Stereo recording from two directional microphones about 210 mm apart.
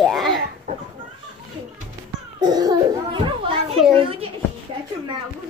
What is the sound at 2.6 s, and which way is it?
Children playing, 20° right (ahead or behind).